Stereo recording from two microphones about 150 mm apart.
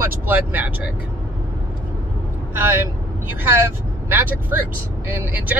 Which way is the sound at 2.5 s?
15° right (ahead or behind).